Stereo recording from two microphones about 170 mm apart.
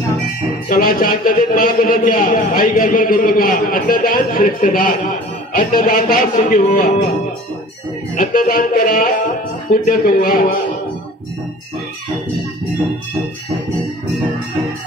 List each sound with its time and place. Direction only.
0.7 s a man's voice: 55° left (ahead or behind)
8.2 s a man's voice: 55° left (ahead or behind)